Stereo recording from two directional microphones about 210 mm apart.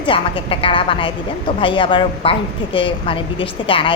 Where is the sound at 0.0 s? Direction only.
25° left (ahead or behind).